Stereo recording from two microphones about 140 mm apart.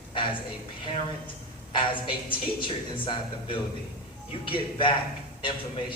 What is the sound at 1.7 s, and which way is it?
Speech, 35° left (ahead or behind).